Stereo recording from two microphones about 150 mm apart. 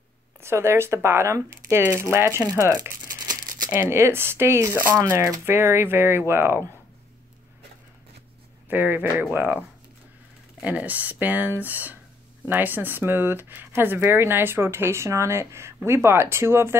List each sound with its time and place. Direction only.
0.4 s speech: 15° right (ahead or behind)
3.1 s crumpling: 65° right (ahead or behind)
3.7 s speech: 15° right (ahead or behind)
8.6 s speech: 15° right (ahead or behind)